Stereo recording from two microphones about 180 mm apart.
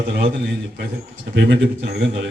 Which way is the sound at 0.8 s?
70° right (ahead or behind).